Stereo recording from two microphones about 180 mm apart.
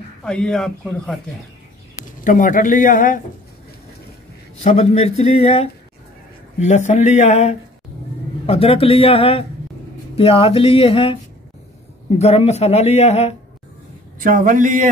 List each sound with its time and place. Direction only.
0.2 s speech: 5° left (ahead or behind)
2.2 s a man's voice: 45° left (ahead or behind)
4.6 s speech: 35° left (ahead or behind)
12.2 s speech: 35° left (ahead or behind)
14.2 s a man's voice: 50° right (ahead or behind)